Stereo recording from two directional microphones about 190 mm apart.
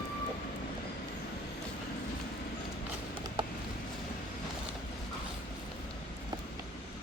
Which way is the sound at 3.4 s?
25° right (ahead or behind).